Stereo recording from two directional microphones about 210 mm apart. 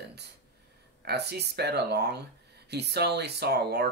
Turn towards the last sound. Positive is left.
turn(degrees=-50)  # may be behind; listen again after turning